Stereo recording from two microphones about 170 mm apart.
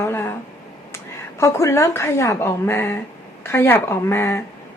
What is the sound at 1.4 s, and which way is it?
A woman's voice, 15° left (ahead or behind).